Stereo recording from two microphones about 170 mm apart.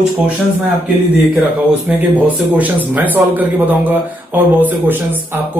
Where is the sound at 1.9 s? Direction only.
10° right (ahead or behind).